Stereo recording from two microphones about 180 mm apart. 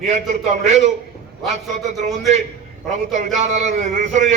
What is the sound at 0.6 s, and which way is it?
Music, 40° right (ahead or behind).